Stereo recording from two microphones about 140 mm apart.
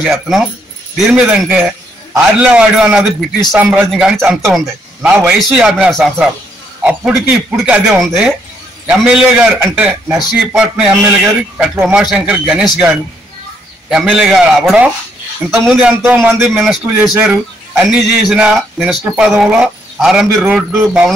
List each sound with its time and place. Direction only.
0.0 s a man's voice: centre (ahead or behind)
11.7 s a man's voice: 15° right (ahead or behind)
12.0 s a man's voice: 5° right (ahead or behind)